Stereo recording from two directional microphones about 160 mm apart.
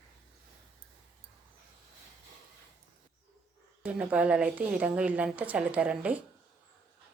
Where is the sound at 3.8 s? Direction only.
5° right (ahead or behind).